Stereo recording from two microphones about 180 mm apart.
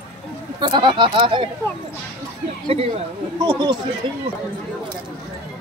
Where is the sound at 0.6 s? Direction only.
25° right (ahead or behind).